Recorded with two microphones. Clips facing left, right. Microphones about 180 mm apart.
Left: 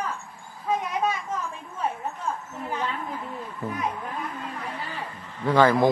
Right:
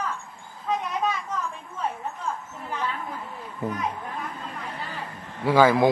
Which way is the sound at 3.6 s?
20° right (ahead or behind).